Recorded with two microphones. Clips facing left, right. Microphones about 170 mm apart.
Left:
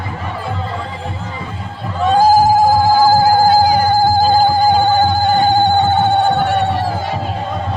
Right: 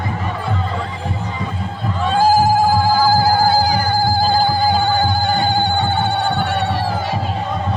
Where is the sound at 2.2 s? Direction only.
40° left (ahead or behind).